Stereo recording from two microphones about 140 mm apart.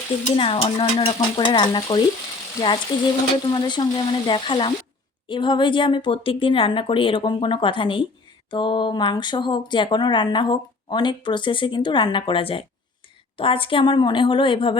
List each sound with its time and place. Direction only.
0.3 s speech: 40° left (ahead or behind)